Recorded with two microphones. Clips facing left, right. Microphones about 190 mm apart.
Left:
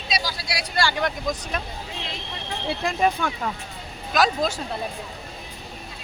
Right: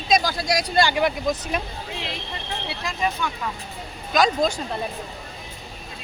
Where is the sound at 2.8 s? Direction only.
50° left (ahead or behind).